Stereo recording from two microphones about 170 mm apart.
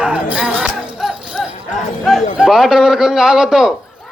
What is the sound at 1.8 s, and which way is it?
Jingle bell, centre (ahead or behind).